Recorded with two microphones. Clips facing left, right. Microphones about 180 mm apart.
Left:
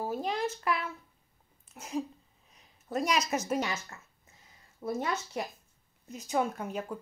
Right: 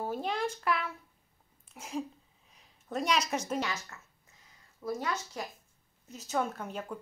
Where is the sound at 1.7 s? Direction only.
5° left (ahead or behind).